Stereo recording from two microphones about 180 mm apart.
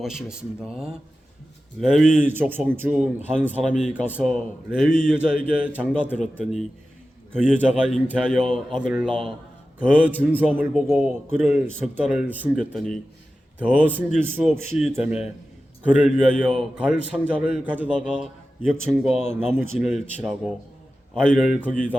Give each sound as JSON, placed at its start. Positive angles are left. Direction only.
{"t": 0.0, "sound": "a man's voice", "side_deg": -5}
{"t": 0.7, "sound": "speech", "side_deg": -35}
{"t": 1.8, "sound": "a man's voice", "side_deg": -5}